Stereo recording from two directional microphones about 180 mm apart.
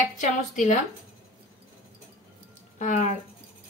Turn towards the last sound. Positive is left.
turn(degrees=40)  # may be behind; listen again after turning